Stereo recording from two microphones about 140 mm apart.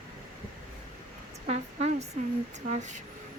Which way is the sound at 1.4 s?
50° right (ahead or behind).